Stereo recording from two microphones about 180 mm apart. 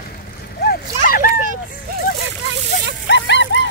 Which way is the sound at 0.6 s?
55° left (ahead or behind).